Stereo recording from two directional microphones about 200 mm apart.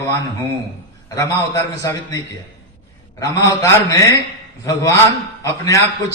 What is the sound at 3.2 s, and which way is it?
A man's voice, 15° left (ahead or behind).